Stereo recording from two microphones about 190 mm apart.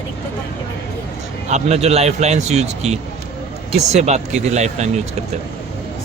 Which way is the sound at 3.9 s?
35° right (ahead or behind).